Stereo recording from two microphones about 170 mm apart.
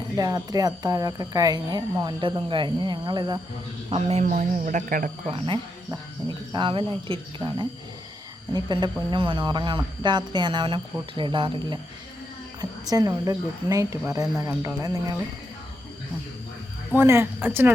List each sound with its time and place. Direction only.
0.2 s speech: 20° right (ahead or behind)
3.8 s speech: 35° right (ahead or behind)
4.3 s speech: 50° right (ahead or behind)
5.3 s speech: 30° right (ahead or behind)
12.8 s speech: 20° right (ahead or behind)
17.0 s a woman's voice: 15° right (ahead or behind)